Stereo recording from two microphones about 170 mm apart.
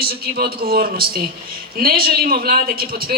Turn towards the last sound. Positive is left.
turn(degrees=-60)  # may be behind; listen again after turning